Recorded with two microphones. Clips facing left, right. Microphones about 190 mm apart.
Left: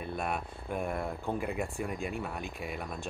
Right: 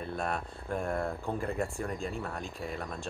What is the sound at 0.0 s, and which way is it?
Speech, 5° left (ahead or behind).